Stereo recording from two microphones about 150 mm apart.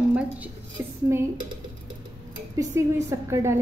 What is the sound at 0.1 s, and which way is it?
Speech, 10° right (ahead or behind).